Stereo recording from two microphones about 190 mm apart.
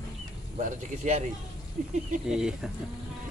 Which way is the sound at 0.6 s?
40° right (ahead or behind).